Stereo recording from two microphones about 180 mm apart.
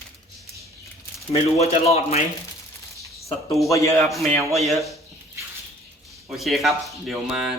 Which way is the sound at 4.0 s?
Centre (ahead or behind).